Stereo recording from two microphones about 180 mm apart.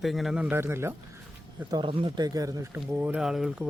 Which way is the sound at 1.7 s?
30° right (ahead or behind).